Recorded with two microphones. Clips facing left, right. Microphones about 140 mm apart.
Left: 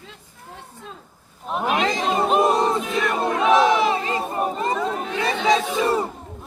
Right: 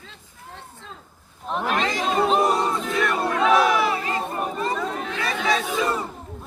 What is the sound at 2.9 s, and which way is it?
Crowd, 20° left (ahead or behind).